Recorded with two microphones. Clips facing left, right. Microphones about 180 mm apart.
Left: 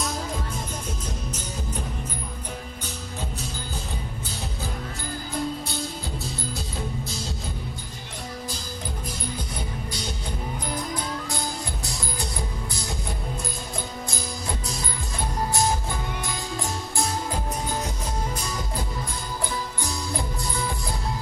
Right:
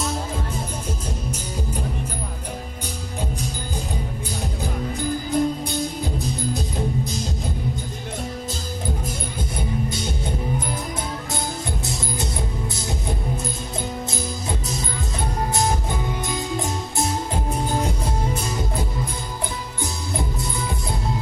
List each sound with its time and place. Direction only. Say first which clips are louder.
5.3 s music: right 6 dB; 20° right (ahead or behind)
12.7 s music: right 5 dB; 20° right (ahead or behind)
15.5 s music: right 2 dB; 20° right (ahead or behind)
19.8 s music: right 6 dB; 20° right (ahead or behind)